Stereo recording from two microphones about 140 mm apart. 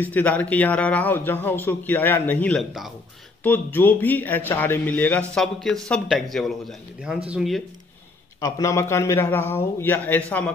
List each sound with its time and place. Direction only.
0.0 s a man's voice: 10° left (ahead or behind)
8.4 s speech: 25° left (ahead or behind)